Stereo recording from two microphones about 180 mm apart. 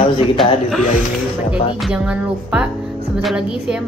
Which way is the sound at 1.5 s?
5° right (ahead or behind).